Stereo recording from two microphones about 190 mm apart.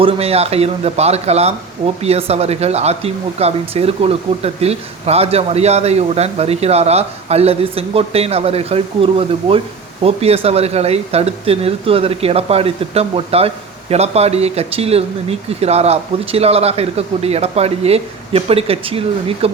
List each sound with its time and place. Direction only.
0.0 s speech: 30° right (ahead or behind)